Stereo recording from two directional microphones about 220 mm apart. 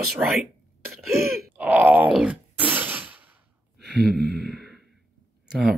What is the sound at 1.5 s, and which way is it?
Groan, 5° right (ahead or behind).